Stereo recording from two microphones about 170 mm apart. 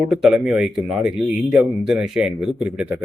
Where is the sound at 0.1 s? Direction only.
5° right (ahead or behind).